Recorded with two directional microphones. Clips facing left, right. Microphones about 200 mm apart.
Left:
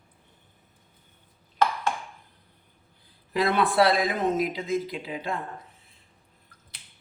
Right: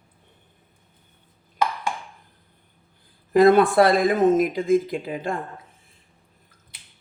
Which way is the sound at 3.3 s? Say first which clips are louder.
Right 8 dB; 50° right (ahead or behind).